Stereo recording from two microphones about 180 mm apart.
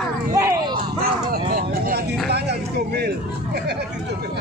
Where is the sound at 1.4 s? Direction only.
55° right (ahead or behind).